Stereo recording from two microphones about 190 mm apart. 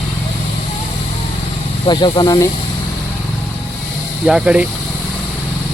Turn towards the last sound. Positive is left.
turn(degrees=-5)  # may be behind; listen again after turning